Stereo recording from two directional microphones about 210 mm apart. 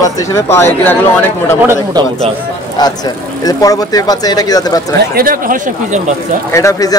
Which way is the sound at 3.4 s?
15° left (ahead or behind).